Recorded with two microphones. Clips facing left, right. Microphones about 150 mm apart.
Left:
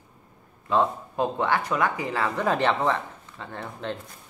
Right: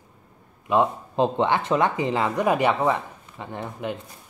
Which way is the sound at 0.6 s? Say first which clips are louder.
Right 2 dB; 15° right (ahead or behind).